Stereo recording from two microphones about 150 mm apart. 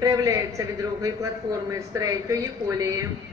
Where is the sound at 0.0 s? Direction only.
20° right (ahead or behind).